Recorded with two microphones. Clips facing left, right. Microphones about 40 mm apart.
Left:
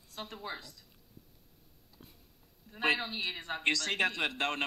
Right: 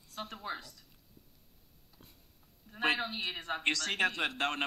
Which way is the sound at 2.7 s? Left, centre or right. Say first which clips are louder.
Left 1 dB; centre.